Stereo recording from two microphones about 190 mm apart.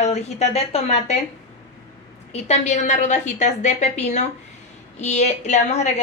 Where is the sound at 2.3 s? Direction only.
35° left (ahead or behind).